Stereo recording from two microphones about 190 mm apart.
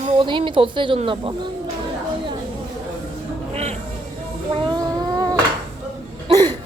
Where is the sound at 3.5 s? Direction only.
35° right (ahead or behind).